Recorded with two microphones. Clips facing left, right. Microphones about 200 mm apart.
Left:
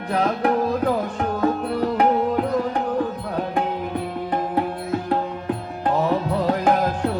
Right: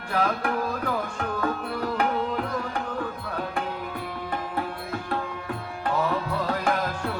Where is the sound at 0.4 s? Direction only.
35° left (ahead or behind).